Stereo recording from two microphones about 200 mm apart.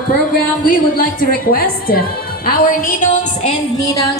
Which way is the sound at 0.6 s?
45° left (ahead or behind).